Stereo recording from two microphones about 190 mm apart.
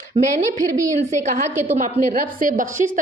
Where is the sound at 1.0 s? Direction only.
35° right (ahead or behind).